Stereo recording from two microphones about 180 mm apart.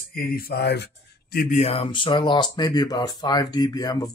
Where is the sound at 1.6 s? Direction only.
35° left (ahead or behind).